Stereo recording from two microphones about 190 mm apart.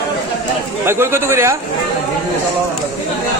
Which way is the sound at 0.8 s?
15° right (ahead or behind).